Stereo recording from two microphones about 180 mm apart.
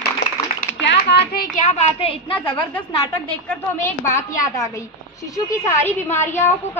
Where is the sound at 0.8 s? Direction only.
65° left (ahead or behind); by 2.7 s 30° left (ahead or behind).